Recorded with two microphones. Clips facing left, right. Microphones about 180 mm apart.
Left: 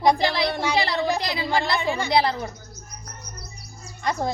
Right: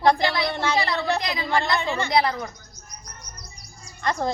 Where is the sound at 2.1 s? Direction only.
30° left (ahead or behind).